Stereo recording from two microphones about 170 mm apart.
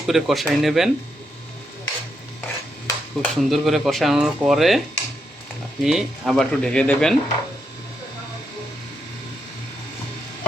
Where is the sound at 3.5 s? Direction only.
Centre (ahead or behind).